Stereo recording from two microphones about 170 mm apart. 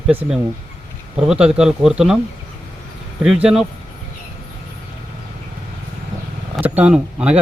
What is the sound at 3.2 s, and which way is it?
Speech, 5° right (ahead or behind).